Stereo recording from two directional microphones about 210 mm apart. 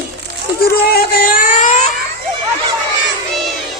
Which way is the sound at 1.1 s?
40° left (ahead or behind).